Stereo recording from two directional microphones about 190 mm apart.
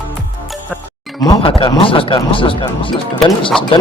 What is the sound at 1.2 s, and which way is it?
Speech, 25° left (ahead or behind).